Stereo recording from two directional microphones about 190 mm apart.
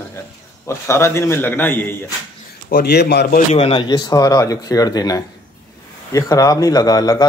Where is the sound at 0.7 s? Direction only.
15° left (ahead or behind).